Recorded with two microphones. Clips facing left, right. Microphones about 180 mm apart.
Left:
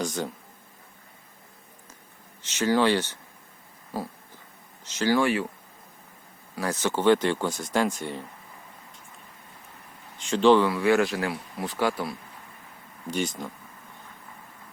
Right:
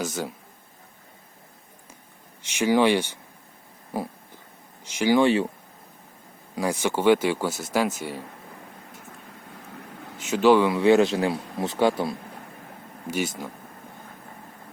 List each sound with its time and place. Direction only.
0.0 s speech: 5° right (ahead or behind)
2.5 s a man's voice: 15° right (ahead or behind)
6.6 s speech: 10° right (ahead or behind)
10.2 s speech: 5° right (ahead or behind)
10.7 s a man's voice: 20° right (ahead or behind)
13.1 s speech: 5° right (ahead or behind)